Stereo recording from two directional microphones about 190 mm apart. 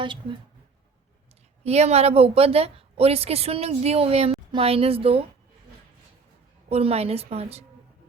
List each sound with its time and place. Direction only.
0.0 s a woman's voice: 25° right (ahead or behind)
1.6 s a woman's voice: 35° right (ahead or behind)
6.7 s a woman's voice: 30° right (ahead or behind)